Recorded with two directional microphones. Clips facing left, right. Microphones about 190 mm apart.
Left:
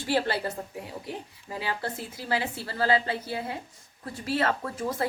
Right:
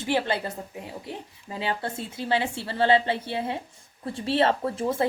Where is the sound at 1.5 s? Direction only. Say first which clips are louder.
Right 2 dB; 25° right (ahead or behind).